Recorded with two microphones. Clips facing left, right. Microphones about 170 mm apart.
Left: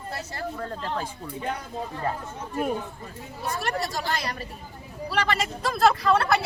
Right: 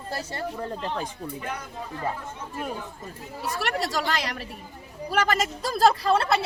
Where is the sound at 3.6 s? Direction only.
75° right (ahead or behind).